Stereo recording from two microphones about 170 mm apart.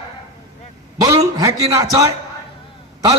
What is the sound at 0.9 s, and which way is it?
A man's voice, 20° right (ahead or behind).